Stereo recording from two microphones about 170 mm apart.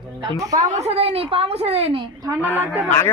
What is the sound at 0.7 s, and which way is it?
A woman's voice, 40° right (ahead or behind).